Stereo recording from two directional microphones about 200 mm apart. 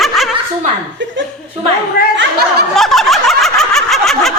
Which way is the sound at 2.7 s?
Centre (ahead or behind).